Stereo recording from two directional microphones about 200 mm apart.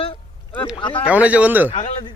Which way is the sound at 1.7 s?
35° left (ahead or behind).